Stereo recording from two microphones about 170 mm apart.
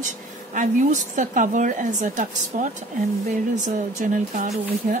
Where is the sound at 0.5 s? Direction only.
50° right (ahead or behind).